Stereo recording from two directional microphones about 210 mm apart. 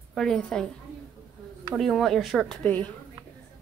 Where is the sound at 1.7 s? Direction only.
Centre (ahead or behind).